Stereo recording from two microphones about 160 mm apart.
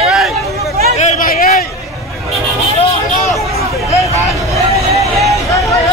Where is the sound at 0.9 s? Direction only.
55° left (ahead or behind).